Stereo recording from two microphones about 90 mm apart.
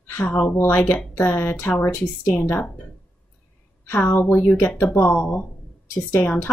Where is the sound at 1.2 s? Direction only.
25° left (ahead or behind).